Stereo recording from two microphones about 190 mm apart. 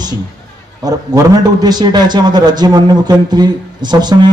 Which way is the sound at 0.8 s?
20° right (ahead or behind).